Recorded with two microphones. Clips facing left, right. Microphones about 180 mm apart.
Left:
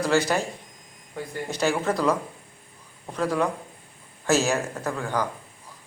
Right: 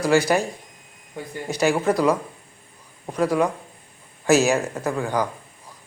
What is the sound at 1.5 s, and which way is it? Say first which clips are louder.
Speech: right 5 dB; 10° right (ahead or behind).